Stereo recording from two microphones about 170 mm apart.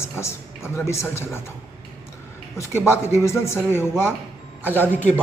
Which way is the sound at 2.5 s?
15° left (ahead or behind).